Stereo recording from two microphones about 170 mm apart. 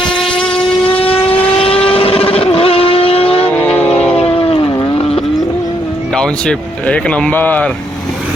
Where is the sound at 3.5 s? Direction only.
10° left (ahead or behind).